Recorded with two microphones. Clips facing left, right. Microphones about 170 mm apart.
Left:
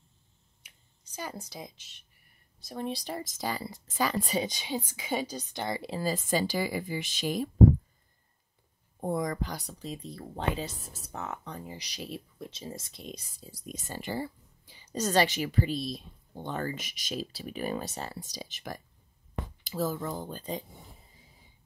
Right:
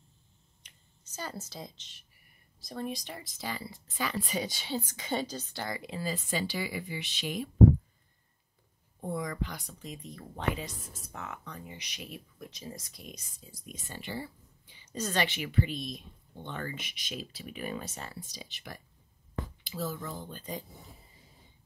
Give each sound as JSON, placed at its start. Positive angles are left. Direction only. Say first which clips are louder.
{"t": 0.7, "sound": "a sound", "louder": "even", "side_deg": 10}
{"t": 2.8, "sound": "speech", "louder": "left 3 dB", "side_deg": 35}
{"t": 4.4, "sound": "a woman's voice", "louder": "left 2 dB", "side_deg": 20}
{"t": 5.8, "sound": "speech", "louder": "left 4 dB", "side_deg": 35}
{"t": 9.0, "sound": "speech", "louder": "left 4 dB", "side_deg": 40}